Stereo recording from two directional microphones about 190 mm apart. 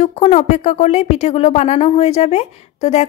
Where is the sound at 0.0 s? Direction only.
35° left (ahead or behind).